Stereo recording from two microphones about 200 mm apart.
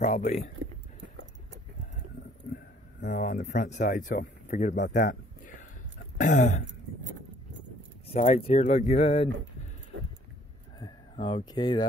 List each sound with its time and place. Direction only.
0.1 s speech: 35° left (ahead or behind)
2.5 s speech: 45° left (ahead or behind)
4.9 s a sound: 40° left (ahead or behind)
6.1 s speech: 40° left (ahead or behind)
8.1 s speech: 30° left (ahead or behind)
9.9 s a sound: 75° right (ahead or behind)
10.8 s speech: 25° left (ahead or behind)